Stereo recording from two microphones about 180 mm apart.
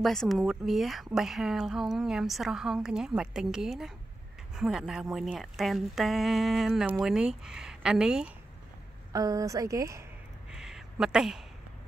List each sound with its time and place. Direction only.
0.0 s a woman's voice: centre (ahead or behind)
9.1 s a woman's voice: 20° right (ahead or behind)
10.5 s a sound: 5° right (ahead or behind)